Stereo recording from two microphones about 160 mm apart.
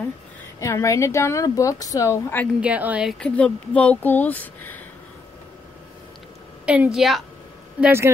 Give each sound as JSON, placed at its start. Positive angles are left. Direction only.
{"t": 0.6, "sound": "a woman's voice", "side_deg": 20}
{"t": 2.6, "sound": "speech", "side_deg": -10}
{"t": 6.6, "sound": "a woman's voice", "side_deg": -5}
{"t": 7.8, "sound": "speech", "side_deg": -15}